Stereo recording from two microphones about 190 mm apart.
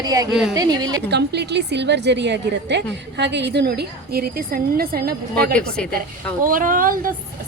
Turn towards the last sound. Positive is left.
turn(degrees=-45)  # may be behind; listen again after turning